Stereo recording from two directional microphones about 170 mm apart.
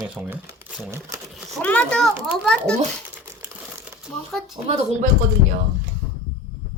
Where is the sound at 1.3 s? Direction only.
Centre (ahead or behind).